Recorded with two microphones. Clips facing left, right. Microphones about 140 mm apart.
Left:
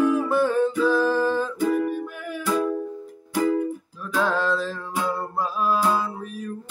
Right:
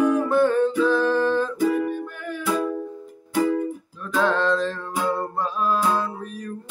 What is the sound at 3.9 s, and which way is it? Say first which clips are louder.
Music: right 3 dB; 5° left (ahead or behind).